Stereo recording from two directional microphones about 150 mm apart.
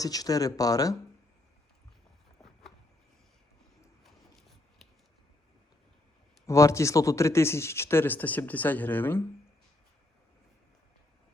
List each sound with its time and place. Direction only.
0.0 s speech: 25° left (ahead or behind)
4.0 s scissors: centre (ahead or behind)
6.4 s speech: 20° left (ahead or behind)